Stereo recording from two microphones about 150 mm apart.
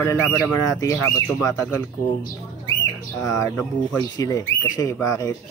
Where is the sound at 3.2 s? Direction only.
25° left (ahead or behind).